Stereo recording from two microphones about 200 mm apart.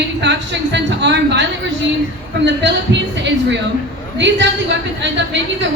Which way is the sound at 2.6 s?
60° right (ahead or behind).